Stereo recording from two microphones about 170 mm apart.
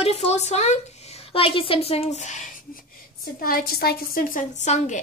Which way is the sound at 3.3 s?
60° left (ahead or behind).